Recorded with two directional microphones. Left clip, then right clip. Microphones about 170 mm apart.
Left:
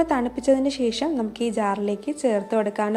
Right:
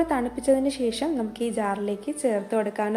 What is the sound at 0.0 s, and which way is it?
A woman's voice, 20° left (ahead or behind).